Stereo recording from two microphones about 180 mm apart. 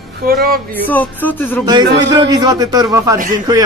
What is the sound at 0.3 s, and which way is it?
Speech, 55° right (ahead or behind).